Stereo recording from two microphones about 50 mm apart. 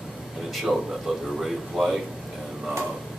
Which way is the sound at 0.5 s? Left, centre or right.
Centre.